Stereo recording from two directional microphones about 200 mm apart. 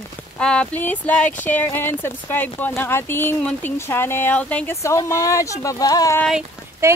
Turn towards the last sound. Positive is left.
turn(degrees=-15)  # may be behind; listen again after turning